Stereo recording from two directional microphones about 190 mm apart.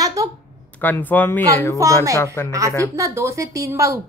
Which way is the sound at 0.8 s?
10° left (ahead or behind).